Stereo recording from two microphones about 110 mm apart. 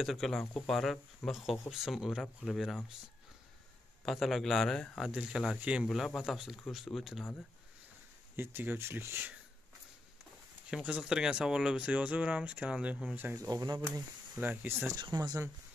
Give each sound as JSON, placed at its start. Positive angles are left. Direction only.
{"t": 0.0, "sound": "speech", "side_deg": 0}
{"t": 4.0, "sound": "speech", "side_deg": 0}
{"t": 8.4, "sound": "speech", "side_deg": -20}
{"t": 10.7, "sound": "speech", "side_deg": -5}
{"t": 13.5, "sound": "speech", "side_deg": -35}
{"t": 14.3, "sound": "speech", "side_deg": -15}